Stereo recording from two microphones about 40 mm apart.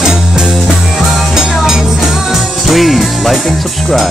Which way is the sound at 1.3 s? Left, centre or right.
Centre.